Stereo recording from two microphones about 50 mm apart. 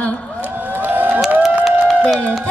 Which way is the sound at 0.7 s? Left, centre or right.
Right.